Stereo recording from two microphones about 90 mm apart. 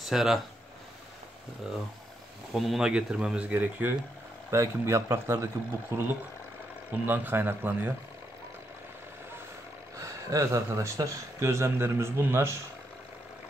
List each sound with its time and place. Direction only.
0.0 s speech: 5° right (ahead or behind)
1.6 s speech: 10° right (ahead or behind)
4.5 s speech: 30° right (ahead or behind)
6.9 s speech: 20° right (ahead or behind)
9.9 s speech: 35° right (ahead or behind)